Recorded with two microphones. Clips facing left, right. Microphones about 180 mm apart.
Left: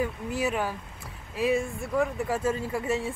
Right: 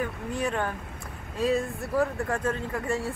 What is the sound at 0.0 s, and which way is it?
Speech, 5° left (ahead or behind).